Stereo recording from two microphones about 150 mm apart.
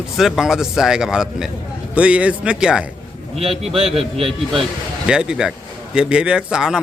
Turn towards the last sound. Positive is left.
turn(degrees=-5)  # may be behind; listen again after turning